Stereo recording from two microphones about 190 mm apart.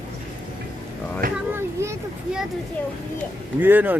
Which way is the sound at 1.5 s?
15° right (ahead or behind).